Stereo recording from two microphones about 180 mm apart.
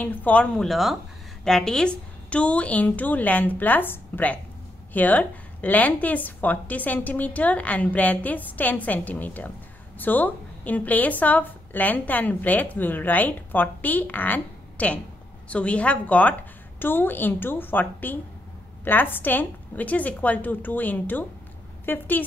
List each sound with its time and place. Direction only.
0.0 s speech: 10° left (ahead or behind)